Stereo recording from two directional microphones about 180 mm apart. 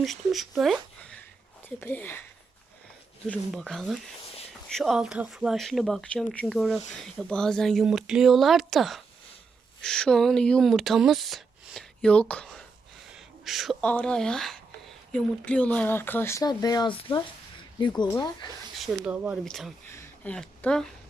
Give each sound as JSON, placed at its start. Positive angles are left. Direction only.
{"t": 0.0, "sound": "speech", "side_deg": 0}
{"t": 3.2, "sound": "speech", "side_deg": 5}
{"t": 18.8, "sound": "speech", "side_deg": -5}
{"t": 19.9, "sound": "speech", "side_deg": 10}